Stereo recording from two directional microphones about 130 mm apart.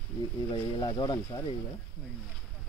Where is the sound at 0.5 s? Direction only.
35° left (ahead or behind).